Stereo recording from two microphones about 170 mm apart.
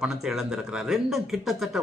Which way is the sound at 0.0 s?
Centre (ahead or behind).